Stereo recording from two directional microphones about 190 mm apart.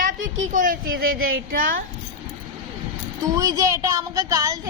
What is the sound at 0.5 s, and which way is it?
Speech, 45° right (ahead or behind).